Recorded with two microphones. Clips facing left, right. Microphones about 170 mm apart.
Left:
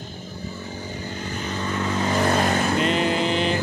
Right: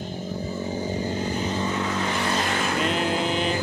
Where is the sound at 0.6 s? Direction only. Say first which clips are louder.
Right 9 dB; 25° right (ahead or behind).